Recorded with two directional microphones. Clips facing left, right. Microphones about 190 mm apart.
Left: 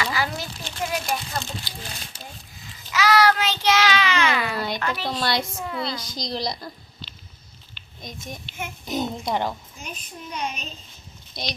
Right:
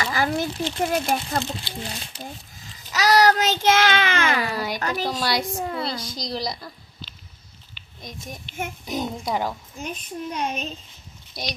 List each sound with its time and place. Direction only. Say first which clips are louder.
0.0 s a sound: right 3 dB; 45° right (ahead or behind)
0.8 s a child's voice: right 3 dB; 50° right (ahead or behind)
1.7 s speech: right 6 dB; 25° right (ahead or behind)
2.9 s a child's voice: right 1 dB; 40° right (ahead or behind)
4.5 s a woman's voice: even; 10° right (ahead or behind)
4.8 s a child's voice: right 1 dB; 40° right (ahead or behind)
5.0 s a woman's voice: even; 10° right (ahead or behind)
5.5 s a child's voice: right 2 dB; 35° right (ahead or behind)
6.1 s a child's voice: even; 5° right (ahead or behind)
8.9 s a child's voice: left 2 dB; 5° right (ahead or behind)
10.3 s a child's voice: right 2 dB; 50° right (ahead or behind)
11.3 s a woman's voice: even; 10° right (ahead or behind)